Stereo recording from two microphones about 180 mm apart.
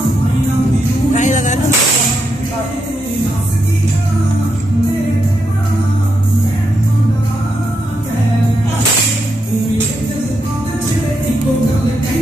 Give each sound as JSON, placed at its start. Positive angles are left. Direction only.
{"t": 1.1, "sound": "music", "side_deg": 45}